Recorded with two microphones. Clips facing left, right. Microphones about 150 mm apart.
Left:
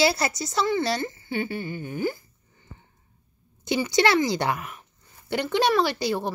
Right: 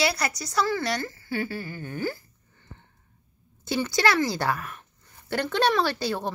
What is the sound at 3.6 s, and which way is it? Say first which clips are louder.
Child singing: left 3 dB; 20° left (ahead or behind).